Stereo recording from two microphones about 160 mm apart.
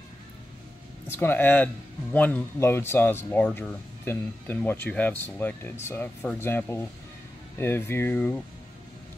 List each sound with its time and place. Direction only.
1.0 s speech: 15° left (ahead or behind)